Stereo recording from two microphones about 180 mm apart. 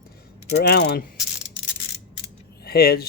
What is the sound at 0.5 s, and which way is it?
Speech, 65° left (ahead or behind).